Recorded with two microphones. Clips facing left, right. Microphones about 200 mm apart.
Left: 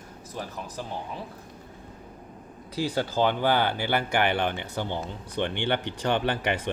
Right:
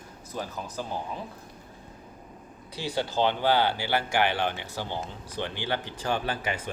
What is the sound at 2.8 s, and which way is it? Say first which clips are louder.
Speech: left 2 dB; 45° left (ahead or behind).